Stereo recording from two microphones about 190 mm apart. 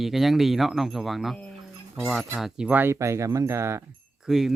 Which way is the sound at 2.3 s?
5° right (ahead or behind).